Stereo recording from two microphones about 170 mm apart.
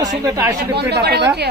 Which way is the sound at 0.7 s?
75° right (ahead or behind).